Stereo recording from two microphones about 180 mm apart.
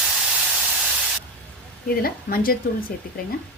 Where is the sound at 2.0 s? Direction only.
55° left (ahead or behind).